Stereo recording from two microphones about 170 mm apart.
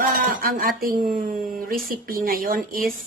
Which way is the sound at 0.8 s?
55° right (ahead or behind).